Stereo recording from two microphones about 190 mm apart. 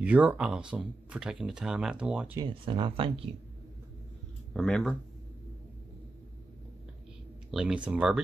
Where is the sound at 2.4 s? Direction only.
25° right (ahead or behind).